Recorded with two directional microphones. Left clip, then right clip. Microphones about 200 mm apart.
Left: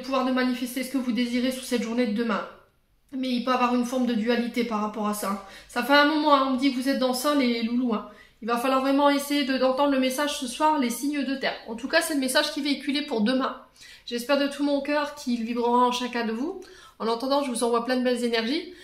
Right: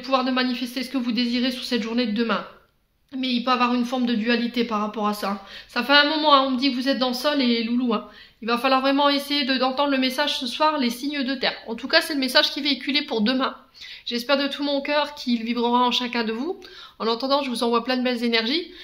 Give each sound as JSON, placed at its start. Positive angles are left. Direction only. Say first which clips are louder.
{"t": 0.0, "sound": "speech", "louder": "right 3 dB", "side_deg": -30}